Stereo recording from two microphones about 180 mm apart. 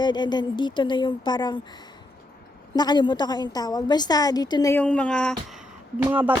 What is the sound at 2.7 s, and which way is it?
A woman's voice, 25° left (ahead or behind).